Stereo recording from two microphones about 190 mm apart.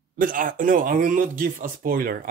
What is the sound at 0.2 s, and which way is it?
Speech, 45° right (ahead or behind).